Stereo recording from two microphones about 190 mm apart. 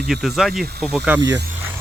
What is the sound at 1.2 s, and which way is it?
Speech, 70° right (ahead or behind).